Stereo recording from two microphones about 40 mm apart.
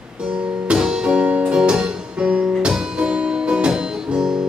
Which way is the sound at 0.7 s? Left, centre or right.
Right.